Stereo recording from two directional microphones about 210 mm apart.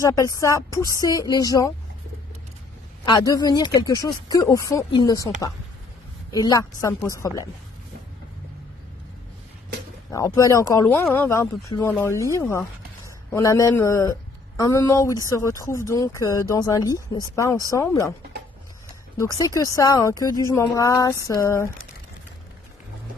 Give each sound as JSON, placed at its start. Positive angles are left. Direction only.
{"t": 0.0, "sound": "speech", "side_deg": 15}
{"t": 3.1, "sound": "speech", "side_deg": 20}
{"t": 10.1, "sound": "speech", "side_deg": 15}
{"t": 19.1, "sound": "speech", "side_deg": 15}